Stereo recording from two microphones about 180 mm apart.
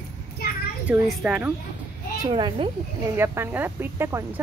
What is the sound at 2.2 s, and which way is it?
Speech, 25° right (ahead or behind).